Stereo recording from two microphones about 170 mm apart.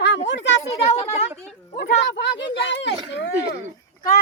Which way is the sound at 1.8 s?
85° left.